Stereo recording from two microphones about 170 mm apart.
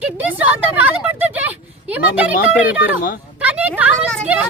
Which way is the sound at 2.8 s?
55° left (ahead or behind).